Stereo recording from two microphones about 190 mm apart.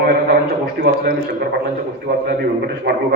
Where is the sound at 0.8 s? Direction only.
55° right (ahead or behind).